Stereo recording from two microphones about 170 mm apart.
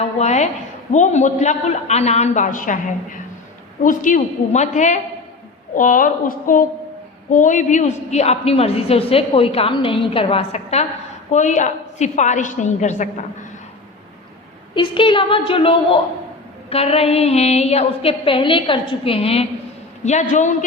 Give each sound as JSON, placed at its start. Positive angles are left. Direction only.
{"t": 0.0, "sound": "a woman's voice", "side_deg": 40}
{"t": 14.8, "sound": "a woman's voice", "side_deg": 30}